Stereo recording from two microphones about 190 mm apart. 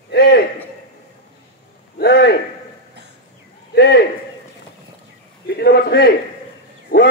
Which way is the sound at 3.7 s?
60° left (ahead or behind).